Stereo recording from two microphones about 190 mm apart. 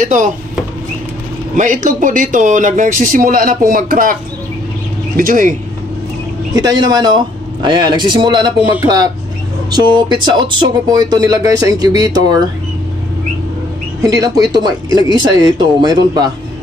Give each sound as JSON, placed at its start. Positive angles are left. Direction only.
{"t": 0.0, "sound": "speech", "side_deg": -40}
{"t": 1.6, "sound": "speech", "side_deg": -45}
{"t": 6.5, "sound": "speech", "side_deg": -20}
{"t": 9.7, "sound": "speech", "side_deg": -20}
{"t": 14.0, "sound": "speech", "side_deg": -20}